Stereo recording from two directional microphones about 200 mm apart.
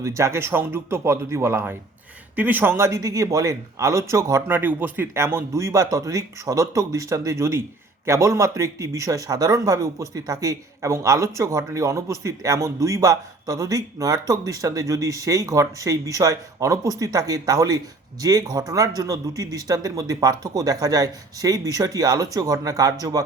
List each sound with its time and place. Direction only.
0.0 s speech: 15° right (ahead or behind)